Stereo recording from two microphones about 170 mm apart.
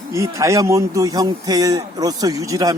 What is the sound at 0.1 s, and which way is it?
Speech, 20° right (ahead or behind).